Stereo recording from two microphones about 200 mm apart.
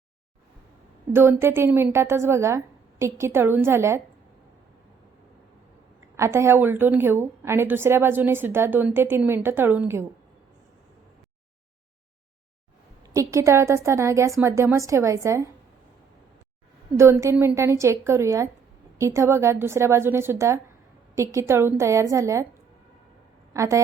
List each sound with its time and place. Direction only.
1.1 s a woman's voice: 10° right (ahead or behind)
6.1 s a woman's voice: 15° right (ahead or behind)
13.1 s a woman's voice: 15° right (ahead or behind)
17.0 s a woman's voice: 15° right (ahead or behind)
23.6 s a woman's voice: 15° right (ahead or behind)